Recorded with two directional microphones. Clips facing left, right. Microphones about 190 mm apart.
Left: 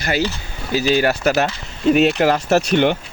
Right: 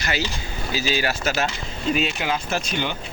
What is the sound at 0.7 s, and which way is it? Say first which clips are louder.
Speech: left 8 dB; 55° left (ahead or behind).